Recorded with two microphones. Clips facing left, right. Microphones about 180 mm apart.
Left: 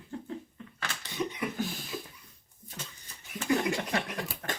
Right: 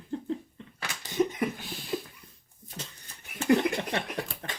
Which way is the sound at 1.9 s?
45° right (ahead or behind).